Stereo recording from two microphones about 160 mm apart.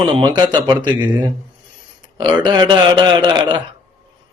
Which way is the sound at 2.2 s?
30° right (ahead or behind).